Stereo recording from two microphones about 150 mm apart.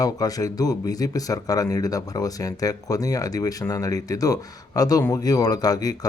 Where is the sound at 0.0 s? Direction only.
25° left (ahead or behind).